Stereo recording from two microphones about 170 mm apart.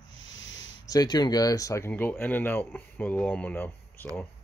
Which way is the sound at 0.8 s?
25° left (ahead or behind).